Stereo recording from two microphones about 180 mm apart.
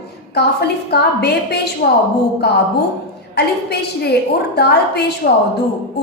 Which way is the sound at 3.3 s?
65° left (ahead or behind).